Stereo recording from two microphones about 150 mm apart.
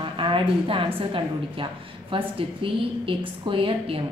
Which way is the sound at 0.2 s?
35° right (ahead or behind).